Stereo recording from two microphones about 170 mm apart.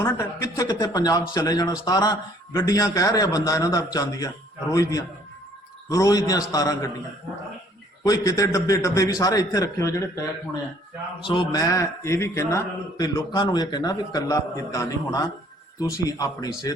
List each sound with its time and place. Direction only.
0.0 s a man's voice: 15° left (ahead or behind)
8.0 s a man's voice: 20° left (ahead or behind)
11.3 s a man's voice: 25° left (ahead or behind)